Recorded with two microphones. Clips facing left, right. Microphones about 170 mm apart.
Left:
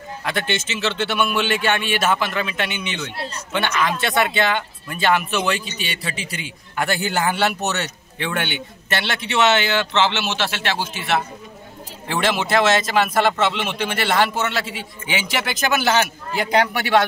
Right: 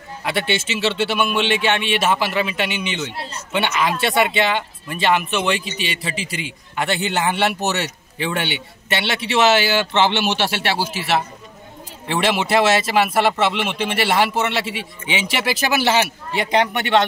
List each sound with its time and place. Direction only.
0.2 s a man's voice: 5° right (ahead or behind)
12.3 s a man's voice: 5° right (ahead or behind)